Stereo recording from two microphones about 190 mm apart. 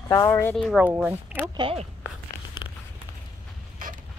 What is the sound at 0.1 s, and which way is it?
Speech, 15° left (ahead or behind).